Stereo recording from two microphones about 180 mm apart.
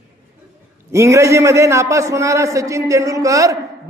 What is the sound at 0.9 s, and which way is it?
A man's voice, 15° right (ahead or behind).